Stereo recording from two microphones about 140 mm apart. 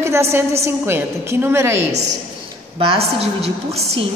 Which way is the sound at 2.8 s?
45° right (ahead or behind).